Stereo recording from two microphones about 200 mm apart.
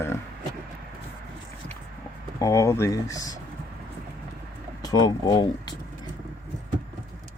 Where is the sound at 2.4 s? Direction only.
15° left (ahead or behind).